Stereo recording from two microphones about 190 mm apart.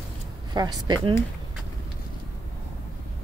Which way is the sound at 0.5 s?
20° right (ahead or behind).